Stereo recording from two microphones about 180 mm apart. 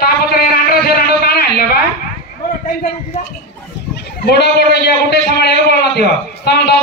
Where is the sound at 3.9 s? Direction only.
65° left (ahead or behind).